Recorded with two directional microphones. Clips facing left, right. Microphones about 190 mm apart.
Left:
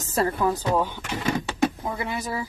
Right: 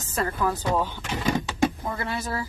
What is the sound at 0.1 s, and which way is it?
Speech, 35° left (ahead or behind).